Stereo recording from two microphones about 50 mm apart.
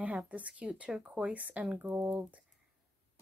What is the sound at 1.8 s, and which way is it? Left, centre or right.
Speech, right.